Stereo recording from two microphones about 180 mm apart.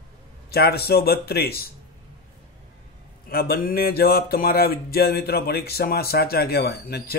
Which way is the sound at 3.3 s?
55° left (ahead or behind).